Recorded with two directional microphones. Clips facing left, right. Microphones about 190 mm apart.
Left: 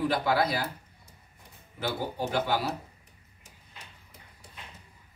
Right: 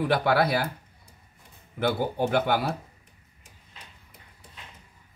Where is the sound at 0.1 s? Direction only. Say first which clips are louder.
Right 4 dB; 65° right (ahead or behind).